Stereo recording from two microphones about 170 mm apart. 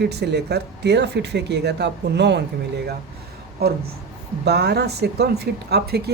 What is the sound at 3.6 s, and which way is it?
Speech, 65° right (ahead or behind).